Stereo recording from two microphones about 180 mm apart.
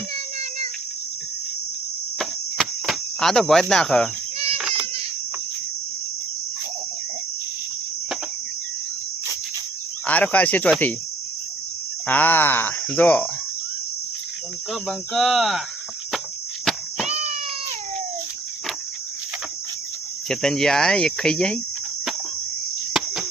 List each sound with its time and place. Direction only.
2.1 s cricket: centre (ahead or behind)
10.1 s speech: 10° left (ahead or behind)
12.0 s speech: 10° left (ahead or behind)
14.7 s speech: centre (ahead or behind)
16.7 s cricket: centre (ahead or behind)
17.1 s a sound: 35° right (ahead or behind)
20.2 s speech: 5° left (ahead or behind)
22.9 s cricket: centre (ahead or behind)